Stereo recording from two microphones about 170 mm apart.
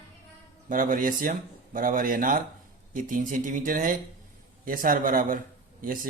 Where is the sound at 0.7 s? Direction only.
50° right (ahead or behind).